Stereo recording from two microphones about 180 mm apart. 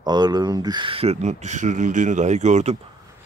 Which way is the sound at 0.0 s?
25° right (ahead or behind).